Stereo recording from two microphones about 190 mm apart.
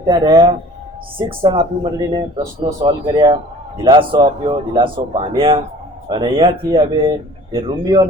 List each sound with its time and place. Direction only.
0.0 s speech: 25° right (ahead or behind)